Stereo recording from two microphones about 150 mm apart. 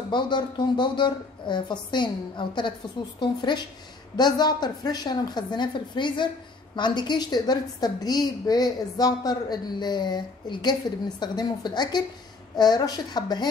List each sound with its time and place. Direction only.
0.1 s a woman's voice: 30° left (ahead or behind)